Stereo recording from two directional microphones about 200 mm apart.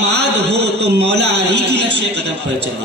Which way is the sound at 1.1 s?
60° right (ahead or behind).